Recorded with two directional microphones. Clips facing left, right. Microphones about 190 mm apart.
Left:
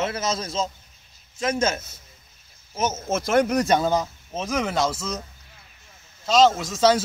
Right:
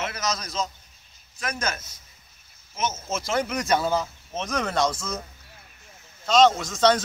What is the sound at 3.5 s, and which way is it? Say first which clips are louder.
Speech: left 4 dB; 35° left (ahead or behind).